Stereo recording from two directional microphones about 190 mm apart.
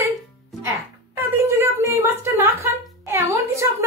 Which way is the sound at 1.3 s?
15° right (ahead or behind).